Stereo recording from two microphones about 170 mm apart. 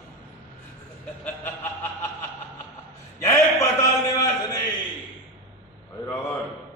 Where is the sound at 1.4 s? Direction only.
10° left (ahead or behind).